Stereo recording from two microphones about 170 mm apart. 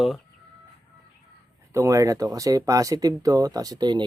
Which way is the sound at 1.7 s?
20° right (ahead or behind).